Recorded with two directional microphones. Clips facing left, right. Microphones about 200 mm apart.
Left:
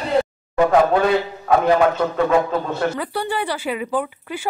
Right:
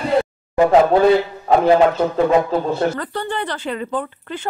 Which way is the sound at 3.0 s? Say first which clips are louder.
Left 1 dB; 10° left (ahead or behind).